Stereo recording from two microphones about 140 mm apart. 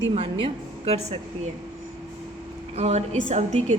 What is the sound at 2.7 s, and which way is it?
A woman's voice, 50° right (ahead or behind).